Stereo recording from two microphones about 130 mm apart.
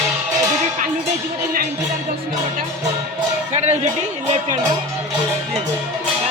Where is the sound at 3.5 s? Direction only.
55° right (ahead or behind).